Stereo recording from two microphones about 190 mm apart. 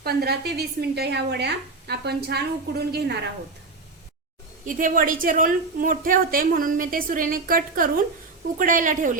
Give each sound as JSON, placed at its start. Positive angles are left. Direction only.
{"t": 0.0, "sound": "a woman's voice", "side_deg": -55}
{"t": 4.6, "sound": "a woman's voice", "side_deg": -45}